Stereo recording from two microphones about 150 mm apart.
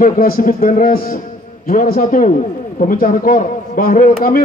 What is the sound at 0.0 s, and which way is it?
Speech, 75° left (ahead or behind).